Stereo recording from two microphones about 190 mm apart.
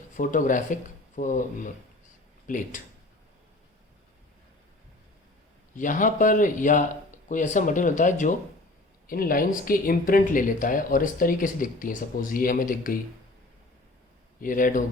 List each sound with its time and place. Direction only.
0.2 s speech: 45° left (ahead or behind)
5.7 s speech: 45° left (ahead or behind)
14.4 s speech: 45° left (ahead or behind)